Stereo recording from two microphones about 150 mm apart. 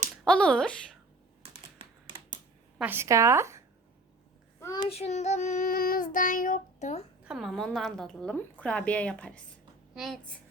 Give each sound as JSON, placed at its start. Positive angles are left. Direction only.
{"t": 0.3, "sound": "speech", "side_deg": 5}
{"t": 1.8, "sound": "typing", "side_deg": -35}
{"t": 2.7, "sound": "speech", "side_deg": -10}
{"t": 4.9, "sound": "child singing", "side_deg": 45}
{"t": 7.3, "sound": "a woman's voice", "side_deg": 0}